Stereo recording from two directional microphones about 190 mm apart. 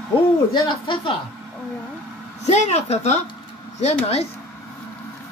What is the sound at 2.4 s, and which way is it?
A woman's voice, 35° left (ahead or behind).